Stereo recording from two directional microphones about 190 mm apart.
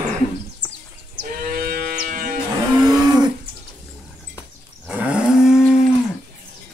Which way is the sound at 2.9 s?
20° right (ahead or behind).